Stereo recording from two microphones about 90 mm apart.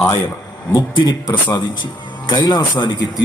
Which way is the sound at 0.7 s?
50° left (ahead or behind).